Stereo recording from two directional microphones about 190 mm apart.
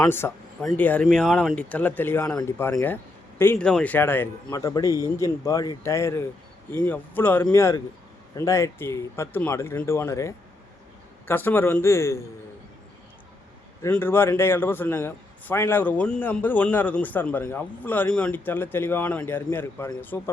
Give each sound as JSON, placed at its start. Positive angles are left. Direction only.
{"t": 0.0, "sound": "a man's voice", "side_deg": 15}
{"t": 13.8, "sound": "a man's voice", "side_deg": 10}